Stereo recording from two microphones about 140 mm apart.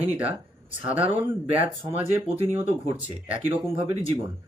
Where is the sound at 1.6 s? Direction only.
45° right (ahead or behind).